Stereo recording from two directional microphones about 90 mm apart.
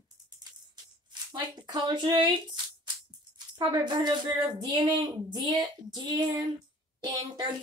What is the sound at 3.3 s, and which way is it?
A woman's voice, 55° right (ahead or behind).